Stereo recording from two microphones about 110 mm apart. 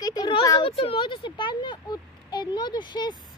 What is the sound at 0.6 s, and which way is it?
Speech, 55° left (ahead or behind).